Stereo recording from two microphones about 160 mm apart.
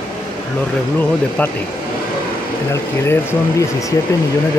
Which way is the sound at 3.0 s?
15° left (ahead or behind).